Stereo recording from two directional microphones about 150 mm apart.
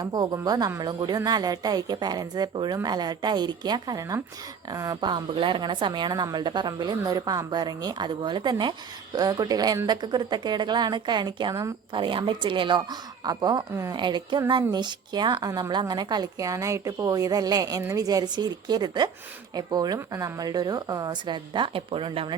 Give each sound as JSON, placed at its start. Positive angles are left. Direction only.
{"t": 0.0, "sound": "a woman's voice", "side_deg": -25}